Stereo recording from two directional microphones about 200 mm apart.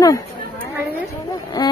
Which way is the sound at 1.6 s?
20° left (ahead or behind).